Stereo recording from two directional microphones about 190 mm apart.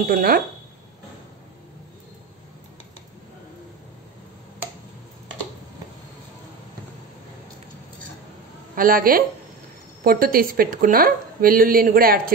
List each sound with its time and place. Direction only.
0.1 s speech: 50° right (ahead or behind)
8.7 s speech: 50° right (ahead or behind)